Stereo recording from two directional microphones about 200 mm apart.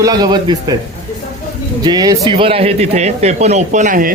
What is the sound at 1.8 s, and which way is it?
Speech, 20° right (ahead or behind).